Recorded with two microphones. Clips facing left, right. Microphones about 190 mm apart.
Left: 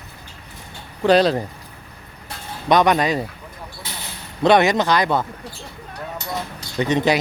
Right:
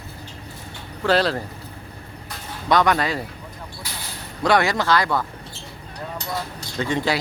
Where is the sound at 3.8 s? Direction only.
25° left (ahead or behind).